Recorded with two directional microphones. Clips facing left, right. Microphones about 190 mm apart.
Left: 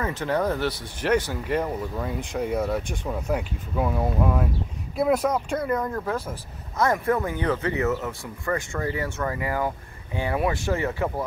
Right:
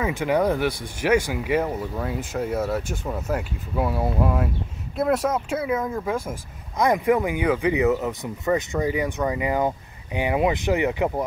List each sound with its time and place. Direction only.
0.0 s speech: 10° right (ahead or behind)